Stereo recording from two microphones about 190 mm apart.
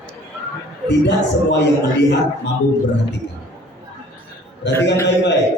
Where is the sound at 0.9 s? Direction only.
65° left (ahead or behind).